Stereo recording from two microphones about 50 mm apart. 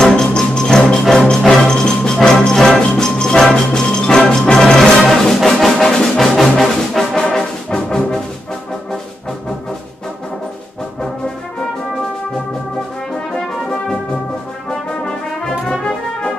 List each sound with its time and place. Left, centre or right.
0.0 s music: centre
13.3 s brass instrument: centre